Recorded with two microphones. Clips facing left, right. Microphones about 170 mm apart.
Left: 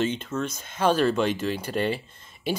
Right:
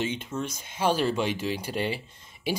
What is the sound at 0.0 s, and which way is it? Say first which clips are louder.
Speech: left 4 dB; 10° right (ahead or behind).